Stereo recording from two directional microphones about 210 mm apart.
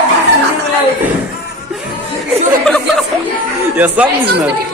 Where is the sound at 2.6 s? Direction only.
Centre (ahead or behind).